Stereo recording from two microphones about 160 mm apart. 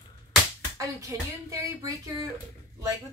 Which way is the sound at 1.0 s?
20° right (ahead or behind).